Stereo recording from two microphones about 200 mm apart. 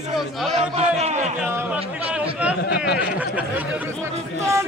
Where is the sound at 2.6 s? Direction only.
55° left (ahead or behind).